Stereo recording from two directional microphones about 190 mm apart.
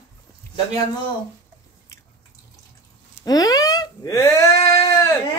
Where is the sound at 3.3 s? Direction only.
20° left (ahead or behind).